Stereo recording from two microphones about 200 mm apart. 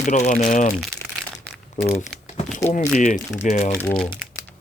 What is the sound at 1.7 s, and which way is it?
Speech, 30° left (ahead or behind).